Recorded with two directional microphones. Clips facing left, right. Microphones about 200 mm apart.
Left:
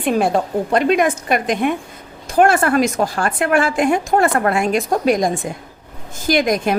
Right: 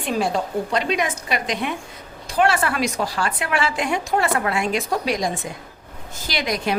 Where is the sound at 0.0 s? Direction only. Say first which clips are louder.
Left 6 dB; 55° left (ahead or behind).